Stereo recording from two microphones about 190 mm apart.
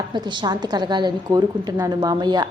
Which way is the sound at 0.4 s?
20° right (ahead or behind).